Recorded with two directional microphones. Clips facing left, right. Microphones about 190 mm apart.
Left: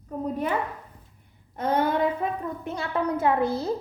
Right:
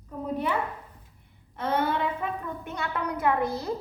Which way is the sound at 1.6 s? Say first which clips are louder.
Left 3 dB; 45° left (ahead or behind).